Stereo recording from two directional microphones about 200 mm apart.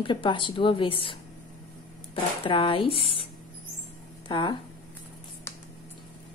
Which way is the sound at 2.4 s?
25° left (ahead or behind).